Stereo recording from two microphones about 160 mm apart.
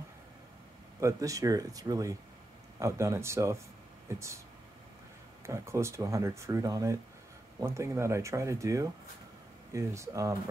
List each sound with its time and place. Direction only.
1.0 s speech: 20° right (ahead or behind)
5.5 s speech: 15° right (ahead or behind)